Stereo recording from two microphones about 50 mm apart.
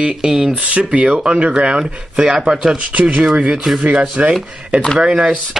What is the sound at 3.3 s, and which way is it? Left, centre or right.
Speech, right.